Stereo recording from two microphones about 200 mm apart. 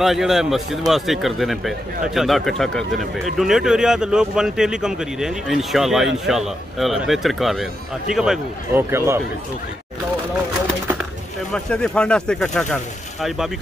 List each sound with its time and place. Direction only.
0.0 s speech: centre (ahead or behind)
11.5 s speech: 5° left (ahead or behind)